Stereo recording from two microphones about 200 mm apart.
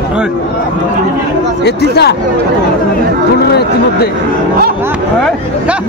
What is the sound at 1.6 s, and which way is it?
Speech, 55° left (ahead or behind).